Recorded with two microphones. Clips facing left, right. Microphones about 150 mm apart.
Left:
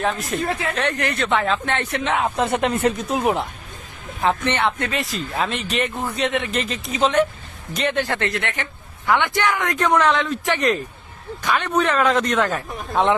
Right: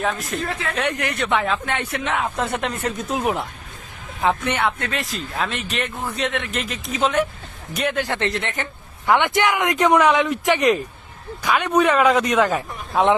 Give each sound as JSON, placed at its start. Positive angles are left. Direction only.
{"t": 0.0, "sound": "a man's voice", "side_deg": 0}
{"t": 0.8, "sound": "a man's voice", "side_deg": -10}
{"t": 2.0, "sound": "a man's voice", "side_deg": 5}